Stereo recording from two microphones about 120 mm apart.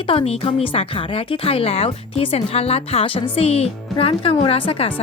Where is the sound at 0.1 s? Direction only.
50° left (ahead or behind).